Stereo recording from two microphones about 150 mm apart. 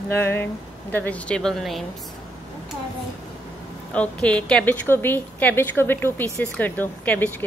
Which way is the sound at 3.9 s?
5° left (ahead or behind).